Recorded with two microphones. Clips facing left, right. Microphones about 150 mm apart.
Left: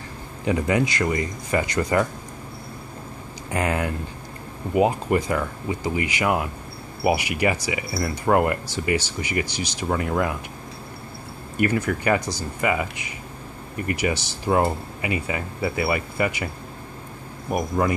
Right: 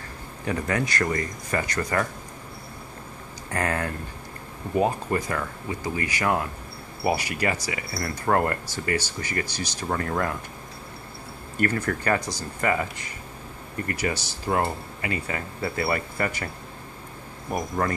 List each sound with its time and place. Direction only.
0.5 s speech: 15° left (ahead or behind)
3.4 s speech: 15° left (ahead or behind)
11.5 s speech: 10° left (ahead or behind)
17.5 s speech: 10° left (ahead or behind)